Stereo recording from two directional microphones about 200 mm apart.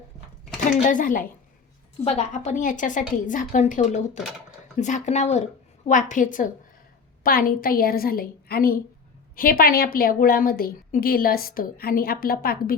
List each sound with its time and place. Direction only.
0.8 s a woman's voice: 40° left (ahead or behind)